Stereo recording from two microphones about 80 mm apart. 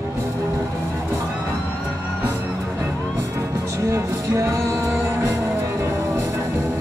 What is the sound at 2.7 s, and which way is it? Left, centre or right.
Music, right.